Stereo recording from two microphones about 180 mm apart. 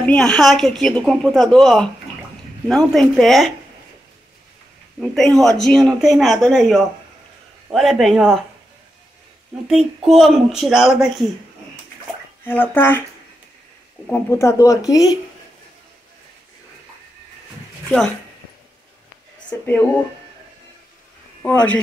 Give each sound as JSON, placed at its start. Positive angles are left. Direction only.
{"t": 0.0, "sound": "speech", "side_deg": 5}
{"t": 2.9, "sound": "speech", "side_deg": 0}
{"t": 5.0, "sound": "speech", "side_deg": 0}
{"t": 9.7, "sound": "speech", "side_deg": 0}
{"t": 12.4, "sound": "speech", "side_deg": 10}
{"t": 14.0, "sound": "speech", "side_deg": 15}
{"t": 19.6, "sound": "speech", "side_deg": 10}
{"t": 21.4, "sound": "speech", "side_deg": 10}